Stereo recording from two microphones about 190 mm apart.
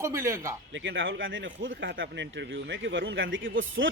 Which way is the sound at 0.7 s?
75° right (ahead or behind).